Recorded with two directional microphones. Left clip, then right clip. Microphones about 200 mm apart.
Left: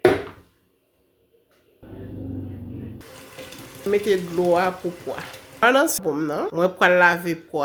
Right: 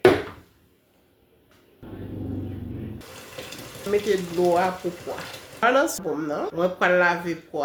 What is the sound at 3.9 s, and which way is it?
Speech, 45° left (ahead or behind).